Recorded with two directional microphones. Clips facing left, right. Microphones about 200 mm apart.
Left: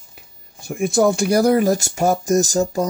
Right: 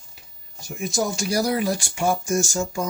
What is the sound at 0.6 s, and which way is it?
Speech, 55° left (ahead or behind).